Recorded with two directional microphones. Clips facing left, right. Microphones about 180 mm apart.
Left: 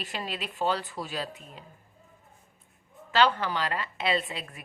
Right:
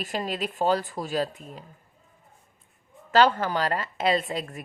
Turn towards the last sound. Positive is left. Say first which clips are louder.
# right 4 dB
turn(degrees=-40)  # may be behind; listen again after turning